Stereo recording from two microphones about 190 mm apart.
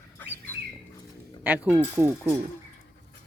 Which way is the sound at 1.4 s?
10° right (ahead or behind).